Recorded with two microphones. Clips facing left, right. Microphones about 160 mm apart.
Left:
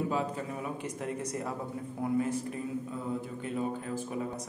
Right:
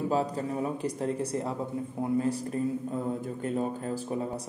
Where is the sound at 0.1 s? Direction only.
35° right (ahead or behind).